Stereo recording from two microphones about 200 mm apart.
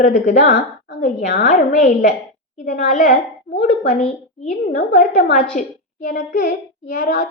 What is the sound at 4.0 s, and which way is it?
A woman's voice, 35° left (ahead or behind).